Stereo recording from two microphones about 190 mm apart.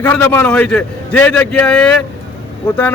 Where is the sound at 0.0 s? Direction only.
10° left (ahead or behind).